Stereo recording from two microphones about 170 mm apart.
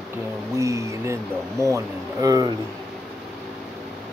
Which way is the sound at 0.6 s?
20° right (ahead or behind).